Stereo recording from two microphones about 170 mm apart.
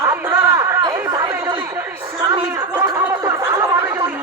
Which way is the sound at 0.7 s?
20° right (ahead or behind).